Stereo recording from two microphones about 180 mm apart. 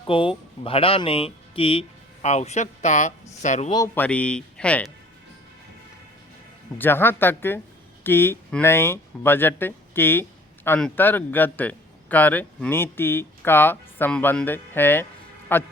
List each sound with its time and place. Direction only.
0.1 s speech: 30° left (ahead or behind)
3.9 s speech: 10° left (ahead or behind)
6.7 s speech: 10° left (ahead or behind)